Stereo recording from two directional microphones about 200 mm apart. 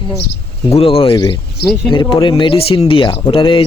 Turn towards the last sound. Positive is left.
turn(degrees=25)  # may be behind; listen again after turning